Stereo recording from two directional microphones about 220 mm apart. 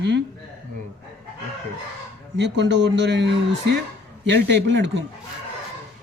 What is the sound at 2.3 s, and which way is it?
Speech, 55° right (ahead or behind).